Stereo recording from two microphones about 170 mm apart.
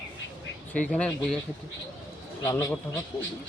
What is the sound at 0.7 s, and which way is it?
Speech, 5° left (ahead or behind).